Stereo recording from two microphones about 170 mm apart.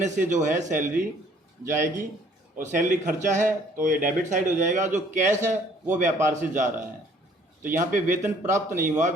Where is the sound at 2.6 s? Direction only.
45° right (ahead or behind).